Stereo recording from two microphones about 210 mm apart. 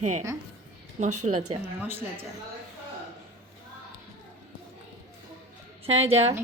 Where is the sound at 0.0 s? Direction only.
35° right (ahead or behind).